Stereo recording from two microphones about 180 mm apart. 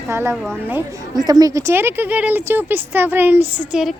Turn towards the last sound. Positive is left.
turn(degrees=-5)  # may be behind; listen again after turning